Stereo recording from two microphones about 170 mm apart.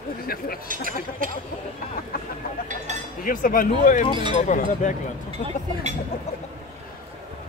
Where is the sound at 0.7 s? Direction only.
55° right (ahead or behind).